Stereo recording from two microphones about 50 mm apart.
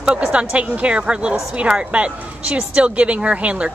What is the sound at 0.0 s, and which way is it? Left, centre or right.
A woman's voice, right.